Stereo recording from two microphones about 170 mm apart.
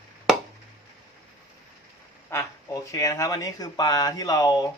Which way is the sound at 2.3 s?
15° left (ahead or behind).